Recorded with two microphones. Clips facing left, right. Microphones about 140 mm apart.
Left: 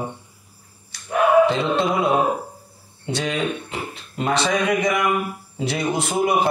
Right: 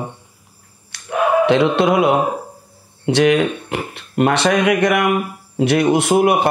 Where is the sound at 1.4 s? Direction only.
70° right (ahead or behind).